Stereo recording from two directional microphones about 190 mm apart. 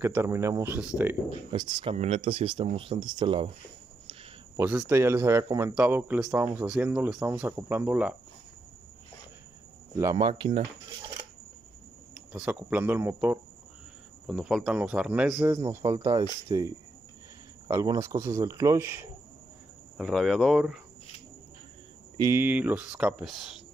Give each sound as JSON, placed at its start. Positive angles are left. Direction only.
{"t": 0.0, "sound": "speech", "side_deg": -10}
{"t": 1.5, "sound": "speech", "side_deg": -25}
{"t": 4.6, "sound": "speech", "side_deg": -10}
{"t": 10.1, "sound": "speech", "side_deg": -25}
{"t": 12.3, "sound": "speech", "side_deg": -5}
{"t": 15.5, "sound": "speech", "side_deg": -15}
{"t": 20.0, "sound": "speech", "side_deg": 0}
{"t": 22.1, "sound": "speech", "side_deg": -15}